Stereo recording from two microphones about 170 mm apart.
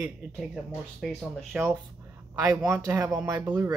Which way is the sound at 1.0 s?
5° right (ahead or behind).